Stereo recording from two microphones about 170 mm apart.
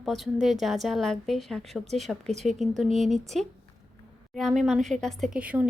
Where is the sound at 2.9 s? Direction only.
45° right (ahead or behind).